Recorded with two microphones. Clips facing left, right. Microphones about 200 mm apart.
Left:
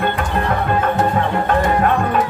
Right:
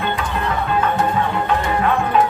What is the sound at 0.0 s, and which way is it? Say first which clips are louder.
Music: left 3 dB; 50° left (ahead or behind).